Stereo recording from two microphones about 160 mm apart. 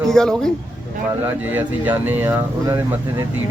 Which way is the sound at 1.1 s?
10° right (ahead or behind).